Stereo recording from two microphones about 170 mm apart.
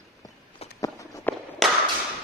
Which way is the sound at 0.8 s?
20° left (ahead or behind).